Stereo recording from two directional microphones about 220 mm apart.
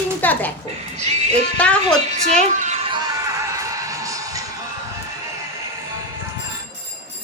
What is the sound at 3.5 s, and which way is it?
Music, 15° right (ahead or behind).